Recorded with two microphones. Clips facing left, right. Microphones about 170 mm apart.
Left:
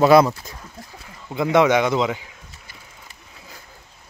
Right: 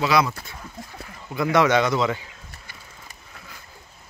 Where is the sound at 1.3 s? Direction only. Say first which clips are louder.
Left 3 dB; 20° left (ahead or behind).